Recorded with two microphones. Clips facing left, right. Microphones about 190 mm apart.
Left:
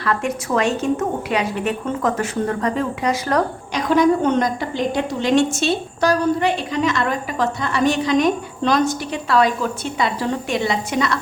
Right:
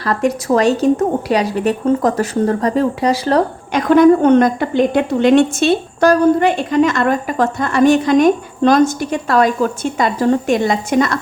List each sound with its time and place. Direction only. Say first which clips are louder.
0.0 s speech: right 5 dB; 35° right (ahead or behind)
3.7 s a woman's voice: right 7 dB; 55° right (ahead or behind)